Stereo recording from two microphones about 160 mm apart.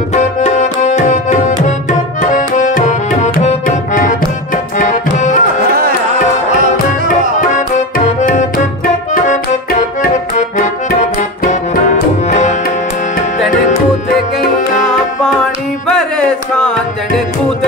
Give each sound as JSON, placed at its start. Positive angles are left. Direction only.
{"t": 0.1, "sound": "tabla", "side_deg": 50}
{"t": 7.3, "sound": "tabla", "side_deg": 50}
{"t": 9.1, "sound": "accordion", "side_deg": 50}
{"t": 11.9, "sound": "tabla", "side_deg": 50}
{"t": 15.9, "sound": "carnatic music", "side_deg": 5}